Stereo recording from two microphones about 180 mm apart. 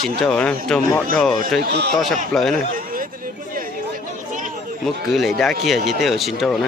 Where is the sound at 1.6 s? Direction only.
65° right (ahead or behind).